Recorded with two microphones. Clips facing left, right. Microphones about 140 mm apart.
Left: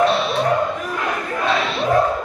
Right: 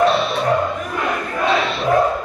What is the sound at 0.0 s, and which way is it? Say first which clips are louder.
Music: right 1 dB; centre (ahead or behind).